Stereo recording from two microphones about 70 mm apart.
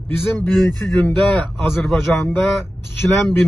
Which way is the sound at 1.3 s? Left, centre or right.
Centre.